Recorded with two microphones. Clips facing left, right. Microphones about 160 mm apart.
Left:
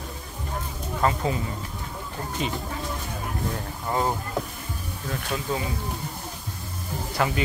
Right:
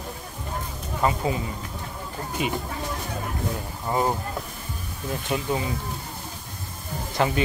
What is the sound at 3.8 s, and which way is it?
Speech, 10° right (ahead or behind).